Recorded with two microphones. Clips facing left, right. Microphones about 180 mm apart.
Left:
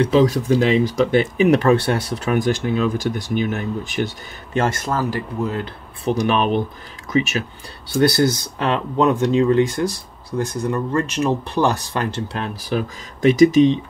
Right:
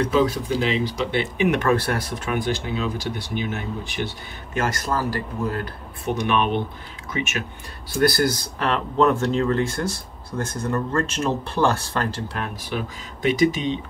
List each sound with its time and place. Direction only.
0.0 s speech: 35° left (ahead or behind)
2.2 s speech: 45° left (ahead or behind)
4.6 s speech: 25° left (ahead or behind)
6.0 s speech: 35° left (ahead or behind)
7.9 s speech: 25° left (ahead or behind)
12.4 s speech: 35° left (ahead or behind)